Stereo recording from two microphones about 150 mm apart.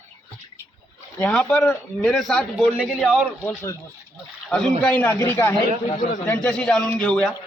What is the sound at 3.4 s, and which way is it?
Speech, 15° left (ahead or behind).